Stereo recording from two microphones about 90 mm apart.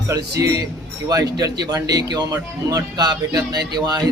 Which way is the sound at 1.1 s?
40° right (ahead or behind).